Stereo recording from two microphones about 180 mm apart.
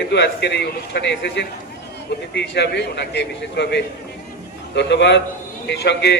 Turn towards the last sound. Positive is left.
turn(degrees=70)  # may be behind; listen again after turning